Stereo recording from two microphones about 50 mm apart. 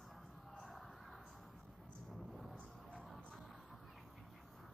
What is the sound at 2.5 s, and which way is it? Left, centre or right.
Music, centre.